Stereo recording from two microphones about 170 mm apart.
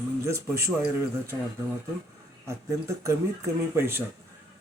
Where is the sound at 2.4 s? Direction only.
15° right (ahead or behind).